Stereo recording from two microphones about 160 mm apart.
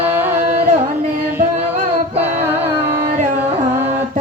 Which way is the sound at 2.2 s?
10° right (ahead or behind).